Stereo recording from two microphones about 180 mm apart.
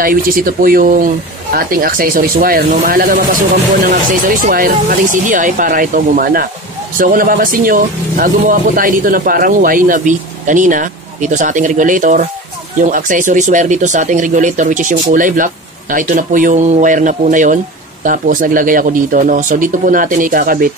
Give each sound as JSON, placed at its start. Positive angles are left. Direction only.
{"t": 0.0, "sound": "speech", "side_deg": -50}
{"t": 4.4, "sound": "speech", "side_deg": -50}